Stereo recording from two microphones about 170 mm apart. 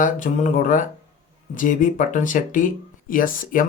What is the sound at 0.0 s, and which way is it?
Speech, 50° left (ahead or behind).